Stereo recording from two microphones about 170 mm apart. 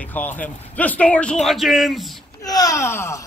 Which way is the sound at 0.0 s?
10° left (ahead or behind).